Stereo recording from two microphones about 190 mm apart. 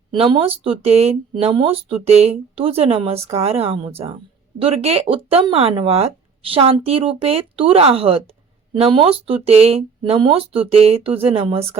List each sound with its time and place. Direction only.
0.1 s speech: 25° right (ahead or behind)